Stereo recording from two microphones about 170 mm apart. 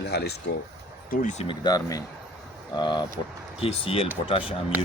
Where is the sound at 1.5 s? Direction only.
25° left (ahead or behind).